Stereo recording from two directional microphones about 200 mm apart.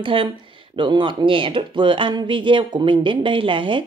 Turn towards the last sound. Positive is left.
turn(degrees=-25)  # may be behind; listen again after turning